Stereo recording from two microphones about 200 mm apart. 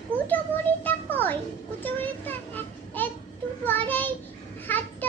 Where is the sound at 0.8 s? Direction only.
10° left (ahead or behind).